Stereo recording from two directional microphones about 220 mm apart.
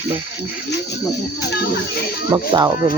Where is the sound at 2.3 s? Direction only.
20° right (ahead or behind).